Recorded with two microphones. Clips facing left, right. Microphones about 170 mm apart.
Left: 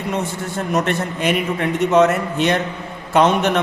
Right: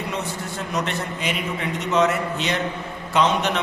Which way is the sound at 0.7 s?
50° left (ahead or behind).